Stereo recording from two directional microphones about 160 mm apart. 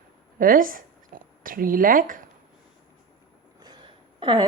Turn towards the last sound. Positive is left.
turn(degrees=-30)  # may be behind; listen again after turning